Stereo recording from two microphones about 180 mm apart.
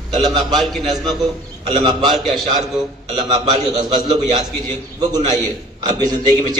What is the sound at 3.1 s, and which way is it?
A man's voice, 20° right (ahead or behind).